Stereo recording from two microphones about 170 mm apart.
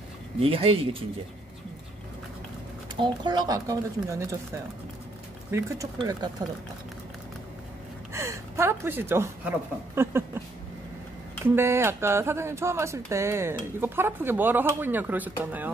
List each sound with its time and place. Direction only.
0.4 s speech: 35° right (ahead or behind)
3.0 s speech: 25° right (ahead or behind)
5.5 s speech: 15° right (ahead or behind)
5.9 s speech: 25° right (ahead or behind)
8.1 s a woman's voice: 15° right (ahead or behind)
11.4 s speech: 15° right (ahead or behind)